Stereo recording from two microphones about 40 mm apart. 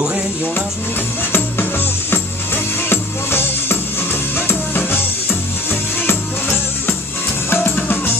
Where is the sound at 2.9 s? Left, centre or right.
Left.